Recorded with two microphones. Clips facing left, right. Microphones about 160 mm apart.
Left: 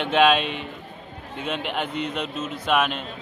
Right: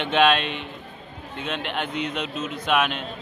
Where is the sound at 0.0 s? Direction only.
5° left (ahead or behind).